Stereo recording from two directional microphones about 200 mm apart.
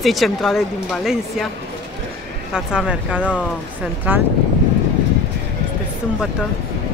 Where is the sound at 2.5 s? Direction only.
5° right (ahead or behind).